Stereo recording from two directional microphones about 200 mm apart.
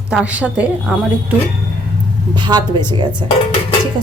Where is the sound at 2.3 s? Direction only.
20° right (ahead or behind).